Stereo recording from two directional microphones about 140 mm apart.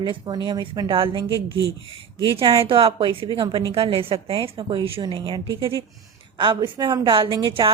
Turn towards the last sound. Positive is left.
turn(degrees=-35)  # may be behind; listen again after turning